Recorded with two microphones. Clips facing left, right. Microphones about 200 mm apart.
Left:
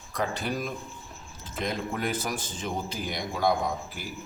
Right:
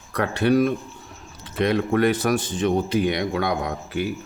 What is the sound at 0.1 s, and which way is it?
Speech, 65° right (ahead or behind).